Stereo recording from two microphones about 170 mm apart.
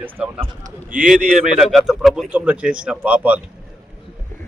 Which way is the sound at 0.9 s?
55° right (ahead or behind).